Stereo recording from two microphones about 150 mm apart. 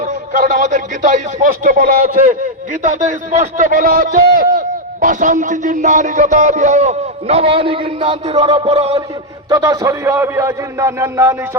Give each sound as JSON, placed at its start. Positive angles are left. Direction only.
{"t": 0.0, "sound": "a man's voice", "side_deg": -60}
{"t": 9.5, "sound": "a man's voice", "side_deg": -20}